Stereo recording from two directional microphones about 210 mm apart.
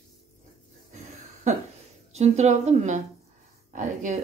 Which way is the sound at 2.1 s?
30° right (ahead or behind).